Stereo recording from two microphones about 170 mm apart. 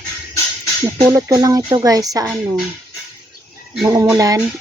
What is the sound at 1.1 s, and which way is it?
Speech, 20° right (ahead or behind).